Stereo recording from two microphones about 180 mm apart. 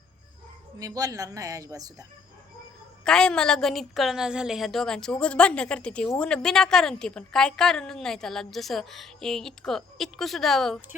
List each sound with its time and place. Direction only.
0.8 s speech: 20° right (ahead or behind)
3.0 s a woman's voice: 5° left (ahead or behind)